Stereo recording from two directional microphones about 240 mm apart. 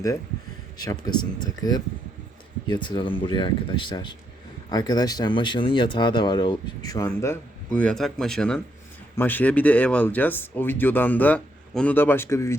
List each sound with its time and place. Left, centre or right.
0.8 s speech: centre